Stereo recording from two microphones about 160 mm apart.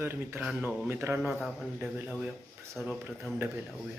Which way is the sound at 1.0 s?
15° right (ahead or behind).